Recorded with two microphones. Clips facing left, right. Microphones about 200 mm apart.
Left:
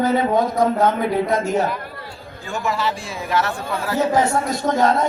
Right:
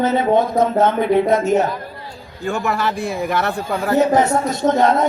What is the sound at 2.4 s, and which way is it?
A man's voice, 60° right (ahead or behind).